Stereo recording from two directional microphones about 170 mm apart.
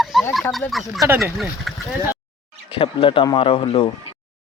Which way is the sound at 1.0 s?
15° right (ahead or behind).